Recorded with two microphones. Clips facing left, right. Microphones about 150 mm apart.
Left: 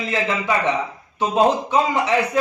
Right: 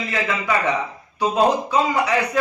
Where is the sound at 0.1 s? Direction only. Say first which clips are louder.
Left 1 dB; 25° left (ahead or behind).